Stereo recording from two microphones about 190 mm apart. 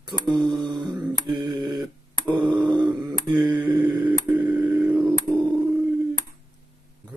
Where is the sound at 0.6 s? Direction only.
25° right (ahead or behind).